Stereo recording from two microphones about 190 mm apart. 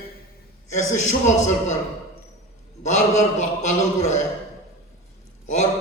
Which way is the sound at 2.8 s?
40° left (ahead or behind).